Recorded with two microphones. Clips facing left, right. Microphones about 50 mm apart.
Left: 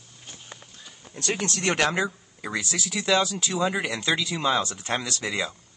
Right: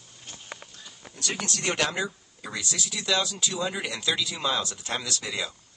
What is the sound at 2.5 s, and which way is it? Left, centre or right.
Speech, centre.